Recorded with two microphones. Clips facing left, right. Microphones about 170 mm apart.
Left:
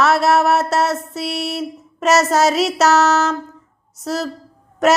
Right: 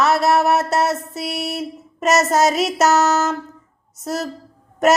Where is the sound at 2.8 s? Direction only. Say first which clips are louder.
Left 1 dB; 45° right (ahead or behind).